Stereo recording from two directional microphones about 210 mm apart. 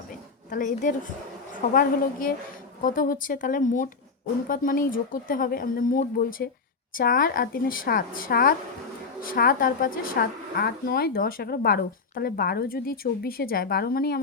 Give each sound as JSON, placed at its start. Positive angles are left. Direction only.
{"t": 0.5, "sound": "a woman's voice", "side_deg": 35}